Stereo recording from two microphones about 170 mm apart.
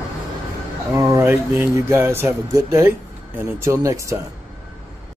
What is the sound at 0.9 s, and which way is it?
Speech, 15° right (ahead or behind).